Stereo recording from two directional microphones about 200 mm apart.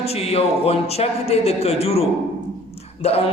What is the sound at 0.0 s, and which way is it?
A man's voice, 30° left (ahead or behind).